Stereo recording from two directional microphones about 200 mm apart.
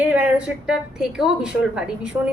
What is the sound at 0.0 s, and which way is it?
A woman's voice, 5° right (ahead or behind).